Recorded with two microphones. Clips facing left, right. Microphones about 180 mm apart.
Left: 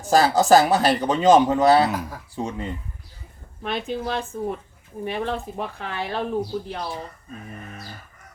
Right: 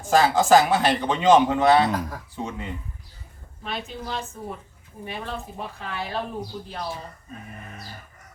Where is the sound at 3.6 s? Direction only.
60° left (ahead or behind).